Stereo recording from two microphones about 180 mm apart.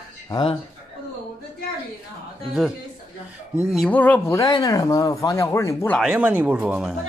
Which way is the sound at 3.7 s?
5° left (ahead or behind).